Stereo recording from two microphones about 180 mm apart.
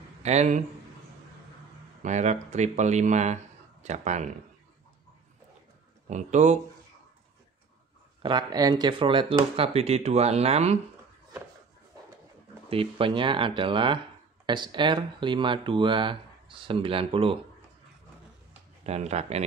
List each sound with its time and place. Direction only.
0.2 s a man's voice: 40° right (ahead or behind)
2.0 s speech: 40° right (ahead or behind)
6.0 s speech: 40° right (ahead or behind)
8.2 s speech: 25° right (ahead or behind)
12.6 s speech: 30° right (ahead or behind)
18.9 s speech: 35° right (ahead or behind)